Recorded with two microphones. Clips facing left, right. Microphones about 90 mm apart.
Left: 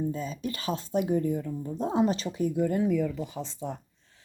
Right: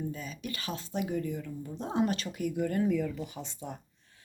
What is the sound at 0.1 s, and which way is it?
Speech, 30° left (ahead or behind).